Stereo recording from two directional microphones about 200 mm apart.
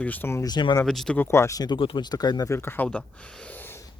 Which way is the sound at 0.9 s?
5° left (ahead or behind).